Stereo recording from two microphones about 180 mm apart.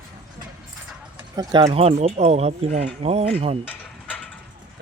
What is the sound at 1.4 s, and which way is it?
Speech, 25° right (ahead or behind).